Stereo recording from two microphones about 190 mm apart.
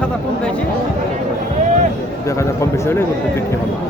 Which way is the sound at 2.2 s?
15° left (ahead or behind).